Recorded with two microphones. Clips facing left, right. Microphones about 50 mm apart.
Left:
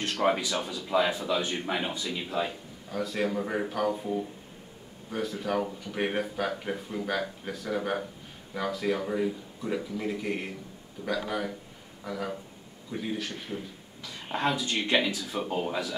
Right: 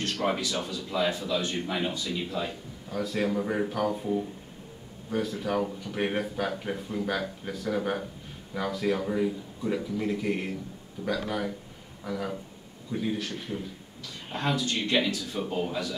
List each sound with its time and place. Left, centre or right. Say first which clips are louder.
0.0 s speech: left 2 dB; centre